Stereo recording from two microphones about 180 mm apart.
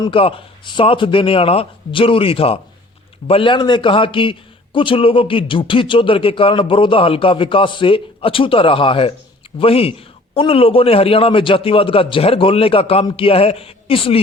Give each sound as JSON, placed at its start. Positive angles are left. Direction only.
{"t": 0.0, "sound": "a man's voice", "side_deg": 30}